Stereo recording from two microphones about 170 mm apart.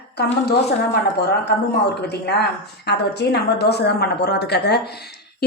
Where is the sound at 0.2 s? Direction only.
75° left (ahead or behind).